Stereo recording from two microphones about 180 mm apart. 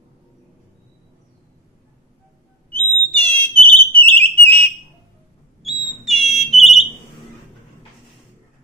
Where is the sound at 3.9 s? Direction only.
10° left (ahead or behind).